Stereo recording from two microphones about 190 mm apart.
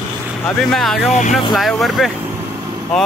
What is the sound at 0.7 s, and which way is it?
Speech, centre (ahead or behind).